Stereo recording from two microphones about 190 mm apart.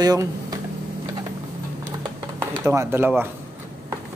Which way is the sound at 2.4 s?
15° right (ahead or behind).